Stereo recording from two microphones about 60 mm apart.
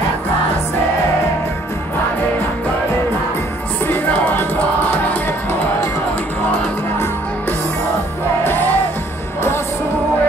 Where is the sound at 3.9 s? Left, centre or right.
Left.